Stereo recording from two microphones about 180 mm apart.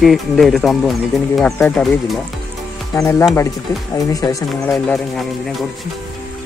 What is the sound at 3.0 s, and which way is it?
Speech, 15° left (ahead or behind).